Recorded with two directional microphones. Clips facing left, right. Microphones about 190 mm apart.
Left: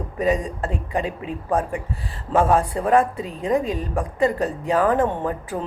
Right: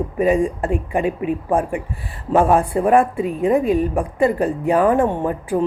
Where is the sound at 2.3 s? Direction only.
15° right (ahead or behind).